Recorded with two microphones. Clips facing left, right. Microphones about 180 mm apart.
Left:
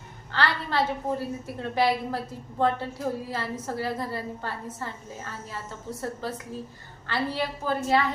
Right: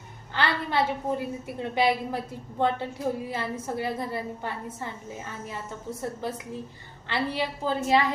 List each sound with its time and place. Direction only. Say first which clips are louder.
0.3 s a woman's voice: even; 20° right (ahead or behind)